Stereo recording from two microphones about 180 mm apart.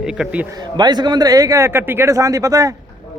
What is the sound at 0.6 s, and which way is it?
A man's voice, 25° right (ahead or behind).